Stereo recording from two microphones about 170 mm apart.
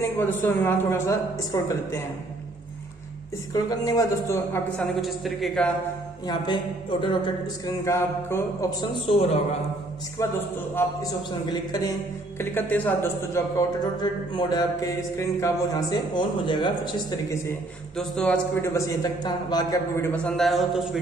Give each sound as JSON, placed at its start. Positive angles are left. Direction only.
{"t": 0.3, "sound": "a man's voice", "side_deg": 10}
{"t": 3.5, "sound": "a man's voice", "side_deg": 20}
{"t": 5.0, "sound": "speech", "side_deg": 0}
{"t": 6.2, "sound": "a sound", "side_deg": 25}
{"t": 9.1, "sound": "a man's voice", "side_deg": 35}
{"t": 10.2, "sound": "a man's voice", "side_deg": 20}
{"t": 12.4, "sound": "a man's voice", "side_deg": 10}
{"t": 13.9, "sound": "a sound", "side_deg": 25}
{"t": 17.9, "sound": "a man's voice", "side_deg": 5}
{"t": 20.1, "sound": "speech", "side_deg": 5}